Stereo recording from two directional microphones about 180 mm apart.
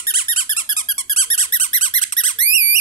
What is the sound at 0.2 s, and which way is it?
Squeak, 50° left (ahead or behind).